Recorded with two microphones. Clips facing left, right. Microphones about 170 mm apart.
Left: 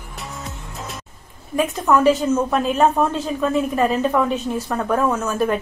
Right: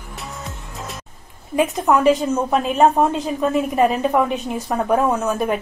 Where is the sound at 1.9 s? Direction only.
15° right (ahead or behind).